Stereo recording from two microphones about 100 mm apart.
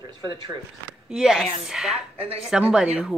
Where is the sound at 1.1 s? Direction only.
5° right (ahead or behind).